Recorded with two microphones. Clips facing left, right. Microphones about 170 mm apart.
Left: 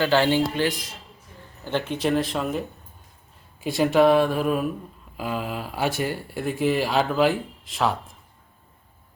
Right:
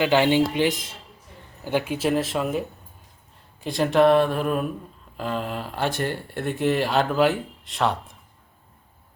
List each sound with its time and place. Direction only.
0.0 s speech: 15° right (ahead or behind)
1.6 s speech: 10° right (ahead or behind)